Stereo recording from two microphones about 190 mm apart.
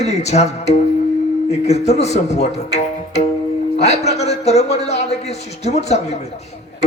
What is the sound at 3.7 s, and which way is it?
Speech, 35° left (ahead or behind).